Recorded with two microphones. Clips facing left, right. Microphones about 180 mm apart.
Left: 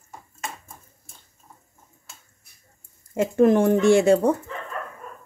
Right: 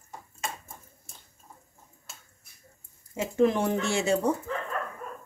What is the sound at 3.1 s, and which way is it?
Speech, 50° left (ahead or behind).